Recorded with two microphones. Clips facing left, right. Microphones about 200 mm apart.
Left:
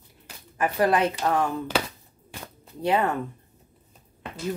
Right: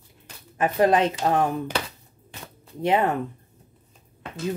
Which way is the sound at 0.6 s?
20° right (ahead or behind).